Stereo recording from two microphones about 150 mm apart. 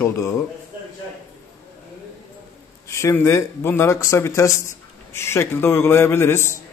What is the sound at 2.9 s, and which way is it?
A man's voice, 20° left (ahead or behind).